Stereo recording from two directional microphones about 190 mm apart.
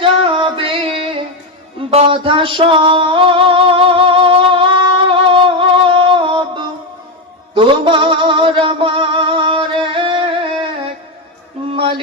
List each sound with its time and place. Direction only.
0.0 s music: 25° right (ahead or behind)
11.8 s mantra: 25° right (ahead or behind)